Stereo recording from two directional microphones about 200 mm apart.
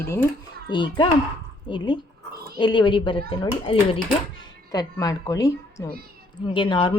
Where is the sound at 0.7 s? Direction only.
25° left (ahead or behind).